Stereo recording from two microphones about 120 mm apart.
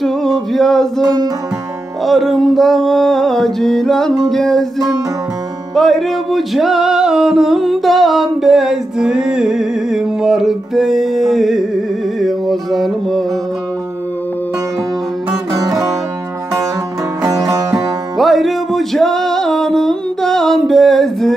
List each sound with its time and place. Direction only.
0.0 s a sound: centre (ahead or behind)
1.0 s music: 30° right (ahead or behind)
2.0 s music: centre (ahead or behind)
5.8 s music: centre (ahead or behind)
15.5 s music: 30° right (ahead or behind)
17.2 s music: 30° right (ahead or behind)
18.1 s music: centre (ahead or behind)